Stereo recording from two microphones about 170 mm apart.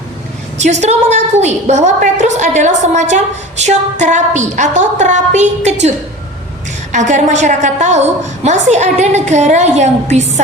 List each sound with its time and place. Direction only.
0.6 s a woman's voice: 45° right (ahead or behind)
6.9 s a woman's voice: 45° right (ahead or behind)